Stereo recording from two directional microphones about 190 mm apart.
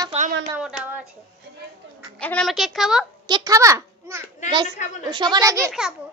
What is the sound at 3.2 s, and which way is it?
A child's voice, 20° right (ahead or behind).